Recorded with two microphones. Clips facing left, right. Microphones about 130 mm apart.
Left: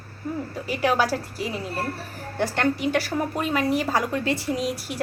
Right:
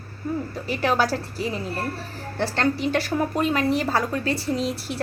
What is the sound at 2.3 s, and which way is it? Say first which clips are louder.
A woman's voice: even; 15° left (ahead or behind).